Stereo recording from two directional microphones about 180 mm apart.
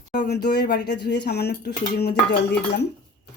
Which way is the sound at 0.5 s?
65° left (ahead or behind).